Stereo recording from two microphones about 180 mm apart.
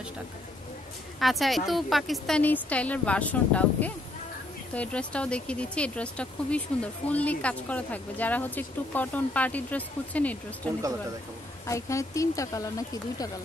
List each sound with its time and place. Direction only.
1.2 s a woman's voice: centre (ahead or behind); by 13.3 s 20° left (ahead or behind)